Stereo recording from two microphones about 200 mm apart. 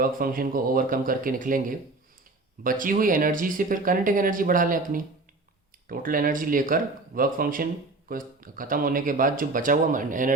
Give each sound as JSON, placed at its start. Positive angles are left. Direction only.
{"t": 0.0, "sound": "speech", "side_deg": -45}
{"t": 2.6, "sound": "speech", "side_deg": -45}